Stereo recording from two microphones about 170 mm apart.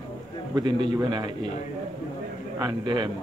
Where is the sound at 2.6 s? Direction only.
25° right (ahead or behind).